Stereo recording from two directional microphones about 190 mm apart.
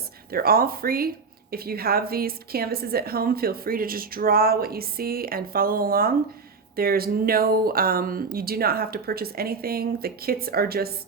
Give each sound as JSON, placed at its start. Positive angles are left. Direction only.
{"t": 0.3, "sound": "speech", "side_deg": -50}